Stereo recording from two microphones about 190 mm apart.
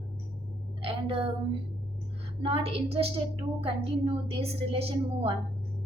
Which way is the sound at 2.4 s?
30° right (ahead or behind).